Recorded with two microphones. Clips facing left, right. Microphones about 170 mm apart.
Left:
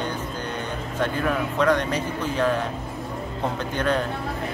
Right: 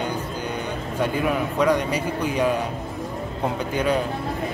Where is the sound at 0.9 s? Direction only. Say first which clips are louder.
Right 1 dB; 10° right (ahead or behind).